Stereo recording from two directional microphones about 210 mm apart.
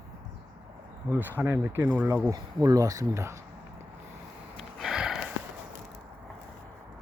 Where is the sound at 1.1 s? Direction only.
10° right (ahead or behind).